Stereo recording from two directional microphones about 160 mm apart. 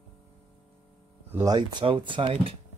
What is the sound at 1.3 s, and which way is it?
Speech, 25° right (ahead or behind).